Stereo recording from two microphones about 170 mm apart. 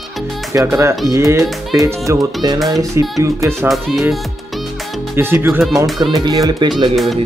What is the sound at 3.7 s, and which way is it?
Speech, centre (ahead or behind).